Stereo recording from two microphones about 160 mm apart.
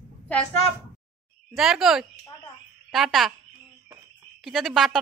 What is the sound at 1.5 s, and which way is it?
A woman's voice, 5° right (ahead or behind).